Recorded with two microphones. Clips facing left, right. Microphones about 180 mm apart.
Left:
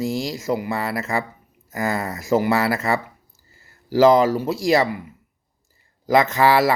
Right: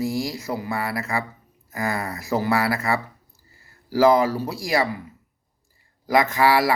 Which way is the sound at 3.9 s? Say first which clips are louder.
Left 3 dB; 20° left (ahead or behind).